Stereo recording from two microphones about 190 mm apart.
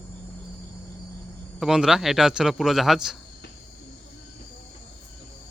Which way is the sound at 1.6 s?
5° right (ahead or behind).